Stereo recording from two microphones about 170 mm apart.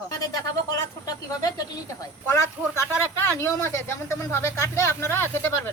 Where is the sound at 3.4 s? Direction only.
15° left (ahead or behind).